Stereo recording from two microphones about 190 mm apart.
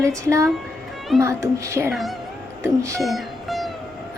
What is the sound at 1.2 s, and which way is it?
Speech, 15° right (ahead or behind).